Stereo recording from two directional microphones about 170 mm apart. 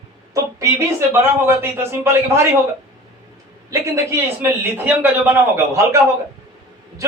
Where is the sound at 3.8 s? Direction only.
15° right (ahead or behind).